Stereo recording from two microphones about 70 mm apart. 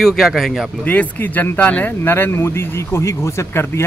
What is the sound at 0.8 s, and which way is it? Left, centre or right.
Speech, left.